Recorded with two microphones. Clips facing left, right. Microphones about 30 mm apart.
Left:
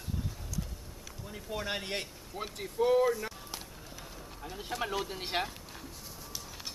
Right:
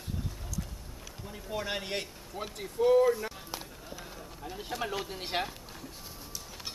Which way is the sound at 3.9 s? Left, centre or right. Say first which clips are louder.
Right 4 dB; centre.